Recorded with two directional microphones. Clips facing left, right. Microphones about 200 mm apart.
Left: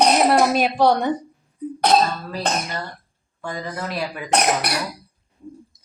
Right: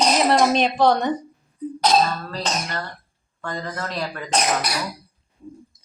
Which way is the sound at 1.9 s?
60° left (ahead or behind).